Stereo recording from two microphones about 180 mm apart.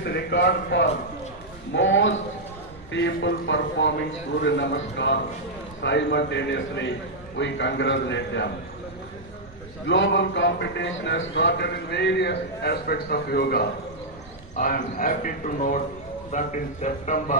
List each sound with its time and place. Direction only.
0.0 s speech: 70° left (ahead or behind)
1.7 s a man's voice: 90° left
9.8 s a man's voice: 85° left; by 17.4 s 45° left (ahead or behind)